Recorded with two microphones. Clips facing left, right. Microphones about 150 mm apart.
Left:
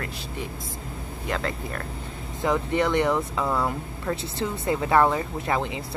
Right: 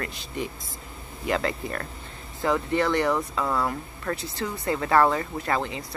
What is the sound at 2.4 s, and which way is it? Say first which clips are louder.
Speech: even; 20° left (ahead or behind).